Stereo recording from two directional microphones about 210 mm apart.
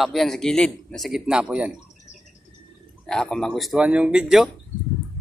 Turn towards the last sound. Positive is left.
turn(degrees=-5)  # may be behind; listen again after turning